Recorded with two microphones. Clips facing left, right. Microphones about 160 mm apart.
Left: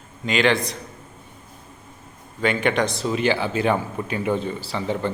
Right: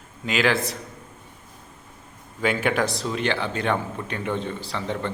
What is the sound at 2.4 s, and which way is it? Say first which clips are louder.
A man's voice: left 2 dB; 5° right (ahead or behind).